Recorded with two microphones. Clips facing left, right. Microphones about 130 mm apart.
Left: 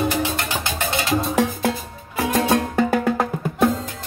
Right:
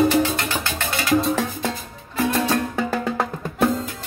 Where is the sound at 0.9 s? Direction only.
25° left (ahead or behind).